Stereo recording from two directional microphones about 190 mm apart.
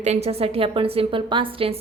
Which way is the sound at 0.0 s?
35° right (ahead or behind).